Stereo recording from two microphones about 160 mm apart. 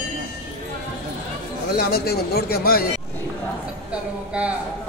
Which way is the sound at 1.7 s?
75° left (ahead or behind).